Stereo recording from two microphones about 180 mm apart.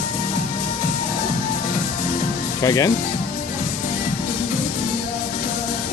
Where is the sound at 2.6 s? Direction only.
20° left (ahead or behind).